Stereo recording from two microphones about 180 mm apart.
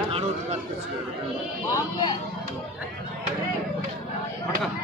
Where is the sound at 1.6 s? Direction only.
20° left (ahead or behind).